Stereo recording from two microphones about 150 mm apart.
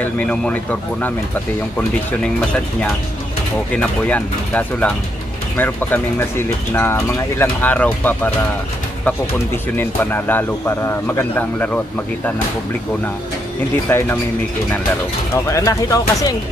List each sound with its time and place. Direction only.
0.0 s speech: 10° left (ahead or behind)
3.7 s speech: 10° left (ahead or behind)
9.8 s speech: 15° left (ahead or behind)
13.8 s speech: 15° left (ahead or behind)
15.3 s speech: 20° left (ahead or behind)